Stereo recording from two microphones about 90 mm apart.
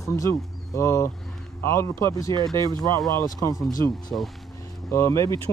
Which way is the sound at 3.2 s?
40° left (ahead or behind).